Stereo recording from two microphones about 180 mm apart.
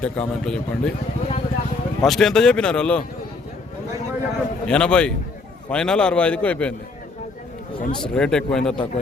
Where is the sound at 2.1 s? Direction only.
5° left (ahead or behind).